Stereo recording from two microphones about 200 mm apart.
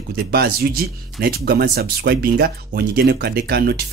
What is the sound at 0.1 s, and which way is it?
Speech, 50° right (ahead or behind).